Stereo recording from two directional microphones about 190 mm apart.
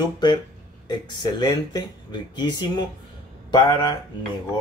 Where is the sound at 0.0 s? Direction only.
20° left (ahead or behind).